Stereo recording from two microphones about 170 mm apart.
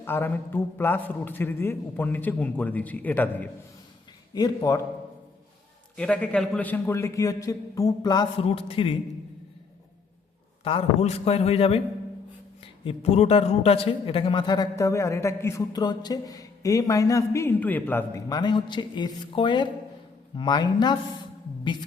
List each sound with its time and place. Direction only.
0.0 s a man's voice: 15° left (ahead or behind)
4.4 s a man's voice: 20° left (ahead or behind)
6.0 s a man's voice: 5° left (ahead or behind); by 9.0 s 30° left (ahead or behind)
10.6 s a man's voice: 35° left (ahead or behind)
12.8 s a man's voice: 35° left (ahead or behind); by 18.2 s 10° left (ahead or behind)
18.3 s a man's voice: 25° left (ahead or behind)